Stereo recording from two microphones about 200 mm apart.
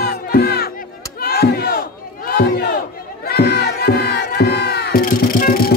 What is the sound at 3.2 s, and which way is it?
Crowd, 55° left (ahead or behind).